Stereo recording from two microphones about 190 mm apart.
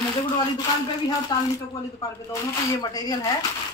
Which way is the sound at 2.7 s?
20° left (ahead or behind).